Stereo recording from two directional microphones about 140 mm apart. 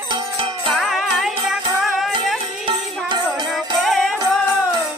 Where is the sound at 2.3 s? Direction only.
40° right (ahead or behind).